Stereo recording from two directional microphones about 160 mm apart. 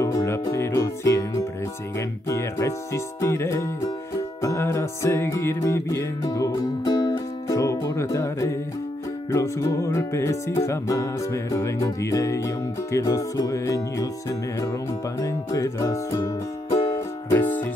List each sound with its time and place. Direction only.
0.0 s music: 20° left (ahead or behind)
15.1 s music: 20° left (ahead or behind)